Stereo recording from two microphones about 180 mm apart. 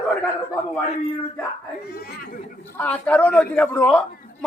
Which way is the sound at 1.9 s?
65° left (ahead or behind).